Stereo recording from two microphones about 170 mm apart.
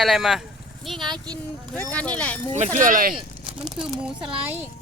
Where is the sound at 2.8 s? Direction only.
50° right (ahead or behind).